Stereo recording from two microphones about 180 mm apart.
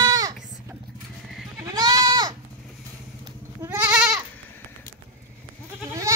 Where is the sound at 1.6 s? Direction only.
20° right (ahead or behind).